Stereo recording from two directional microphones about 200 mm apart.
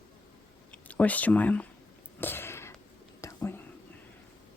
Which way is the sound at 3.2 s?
10° left (ahead or behind).